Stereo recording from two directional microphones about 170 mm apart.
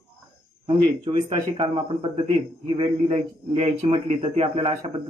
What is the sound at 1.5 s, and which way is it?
A man's voice, 30° right (ahead or behind).